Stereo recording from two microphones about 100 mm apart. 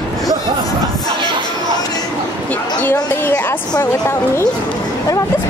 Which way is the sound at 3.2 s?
20° left (ahead or behind).